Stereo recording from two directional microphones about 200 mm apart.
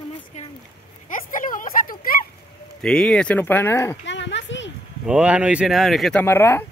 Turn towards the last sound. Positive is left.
turn(degrees=10)  # may be behind; listen again after turning